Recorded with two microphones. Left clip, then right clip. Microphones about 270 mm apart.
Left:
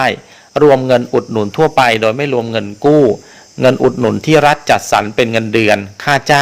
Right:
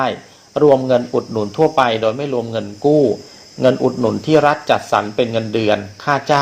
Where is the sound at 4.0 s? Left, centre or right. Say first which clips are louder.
Left 3 dB; left.